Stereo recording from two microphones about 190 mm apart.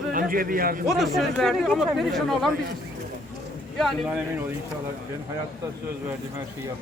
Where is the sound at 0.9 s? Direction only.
Centre (ahead or behind).